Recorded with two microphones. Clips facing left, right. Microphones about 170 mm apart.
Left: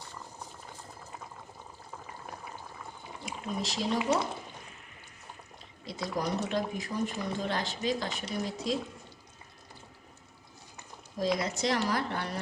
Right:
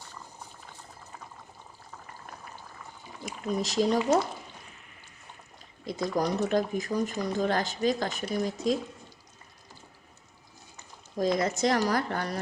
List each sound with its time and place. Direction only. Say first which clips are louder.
3.2 s speech: right 5 dB; 45° right (ahead or behind)
5.8 s speech: right 5 dB; 45° right (ahead or behind)
11.2 s speech: right 4 dB; 50° right (ahead or behind)